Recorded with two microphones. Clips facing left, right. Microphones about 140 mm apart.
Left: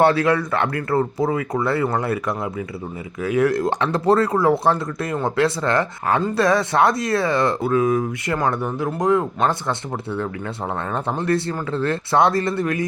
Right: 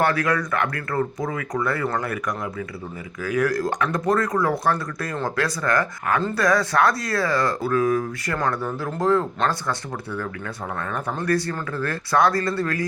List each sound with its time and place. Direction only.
0.0 s speech: 25° left (ahead or behind)